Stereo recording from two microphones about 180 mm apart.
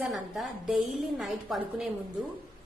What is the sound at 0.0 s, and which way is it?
A woman's voice, centre (ahead or behind).